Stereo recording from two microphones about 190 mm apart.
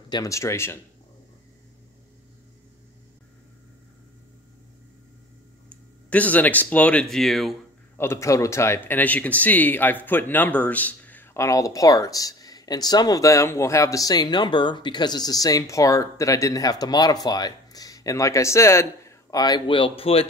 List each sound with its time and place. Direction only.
0.1 s speech: 15° left (ahead or behind)
5.7 s speech: 5° left (ahead or behind)
8.0 s speech: 15° left (ahead or behind); by 20.2 s 30° left (ahead or behind)